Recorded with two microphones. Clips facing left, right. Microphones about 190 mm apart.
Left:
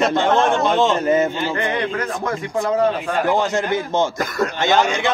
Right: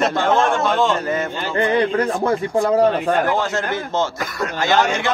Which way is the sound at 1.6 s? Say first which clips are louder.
Right 9 dB; 35° right (ahead or behind).